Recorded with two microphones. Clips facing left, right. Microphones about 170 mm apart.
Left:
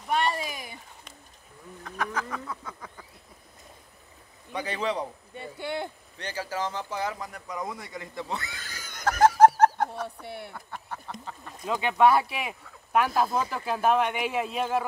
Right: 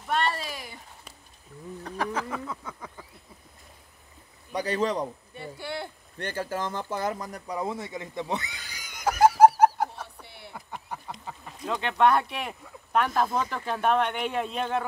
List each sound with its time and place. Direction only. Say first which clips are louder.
0.1 s speech: left 1 dB; 10° left (ahead or behind)
1.8 s speech: right 2 dB; 35° right (ahead or behind)
2.2 s a sound: right 2 dB; 20° right (ahead or behind)
4.6 s speech: right 3 dB; 40° right (ahead or behind)
5.3 s speech: left 2 dB; 20° left (ahead or behind)
6.1 s speech: right 2 dB; 50° right (ahead or behind); by 9.5 s 10° right (ahead or behind)
9.6 s dog: even; 10° right (ahead or behind)
10.2 s a sound: left 9 dB; 50° left (ahead or behind)
10.5 s a sound: right 1 dB; 10° right (ahead or behind)
11.6 s speech: left 1 dB; 5° left (ahead or behind)